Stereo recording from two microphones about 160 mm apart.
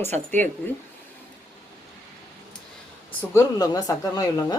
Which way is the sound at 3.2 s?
20° left (ahead or behind).